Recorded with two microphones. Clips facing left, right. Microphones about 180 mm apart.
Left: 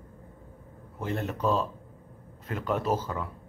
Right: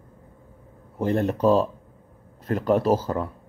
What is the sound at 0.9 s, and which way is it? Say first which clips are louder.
Speech: right 9 dB; 35° right (ahead or behind).